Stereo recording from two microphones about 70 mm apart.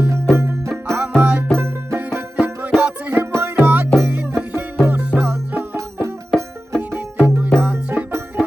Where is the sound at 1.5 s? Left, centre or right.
Right.